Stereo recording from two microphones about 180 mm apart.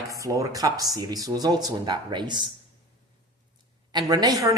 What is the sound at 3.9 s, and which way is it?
Speech, 20° right (ahead or behind).